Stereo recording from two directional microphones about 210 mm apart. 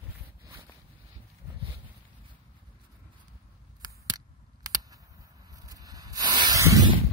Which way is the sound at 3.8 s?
20° right (ahead or behind).